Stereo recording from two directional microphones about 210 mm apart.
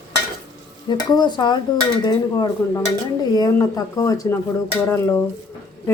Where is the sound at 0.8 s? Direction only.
20° left (ahead or behind).